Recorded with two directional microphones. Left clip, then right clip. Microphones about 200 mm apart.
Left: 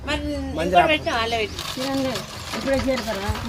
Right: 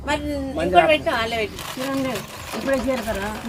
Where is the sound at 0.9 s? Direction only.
60° right (ahead or behind).